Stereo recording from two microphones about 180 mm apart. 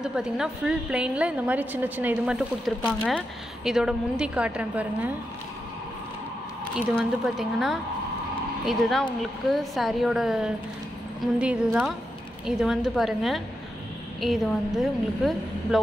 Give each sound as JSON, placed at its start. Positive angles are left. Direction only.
{"t": 0.0, "sound": "a woman's voice", "side_deg": -5}
{"t": 7.0, "sound": "a woman's voice", "side_deg": 0}